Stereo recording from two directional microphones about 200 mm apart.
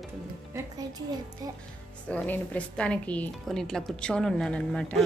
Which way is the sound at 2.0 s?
5° left (ahead or behind).